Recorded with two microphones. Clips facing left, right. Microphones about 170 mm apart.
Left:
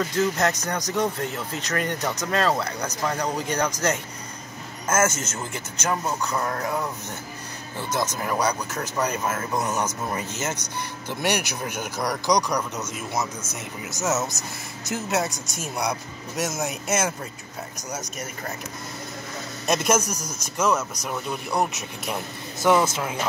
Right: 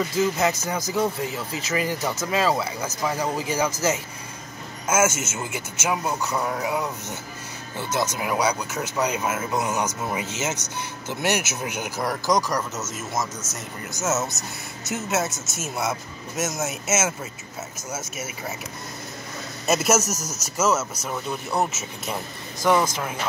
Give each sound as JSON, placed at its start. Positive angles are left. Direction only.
{"t": 0.0, "sound": "speech", "side_deg": -5}
{"t": 7.9, "sound": "speech", "side_deg": -10}
{"t": 19.6, "sound": "a man's voice", "side_deg": -5}
{"t": 22.7, "sound": "speech", "side_deg": 15}